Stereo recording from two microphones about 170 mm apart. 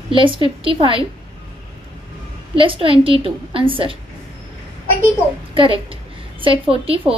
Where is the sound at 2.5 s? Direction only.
30° right (ahead or behind).